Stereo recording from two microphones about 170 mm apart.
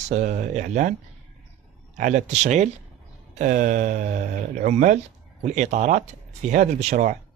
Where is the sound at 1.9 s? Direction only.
45° right (ahead or behind).